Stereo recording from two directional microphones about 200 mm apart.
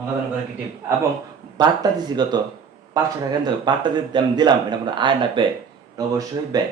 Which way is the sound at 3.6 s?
20° right (ahead or behind).